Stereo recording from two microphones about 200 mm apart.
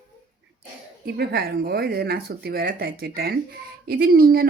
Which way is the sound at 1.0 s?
55° right (ahead or behind).